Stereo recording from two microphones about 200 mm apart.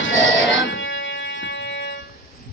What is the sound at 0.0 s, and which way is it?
Music, 75° left (ahead or behind).